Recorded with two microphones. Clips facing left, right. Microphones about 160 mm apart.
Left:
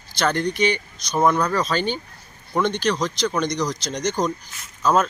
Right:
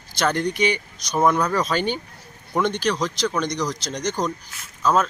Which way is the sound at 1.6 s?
10° right (ahead or behind).